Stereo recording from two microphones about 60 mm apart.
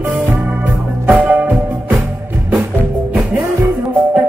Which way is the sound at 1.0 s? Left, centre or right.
Right.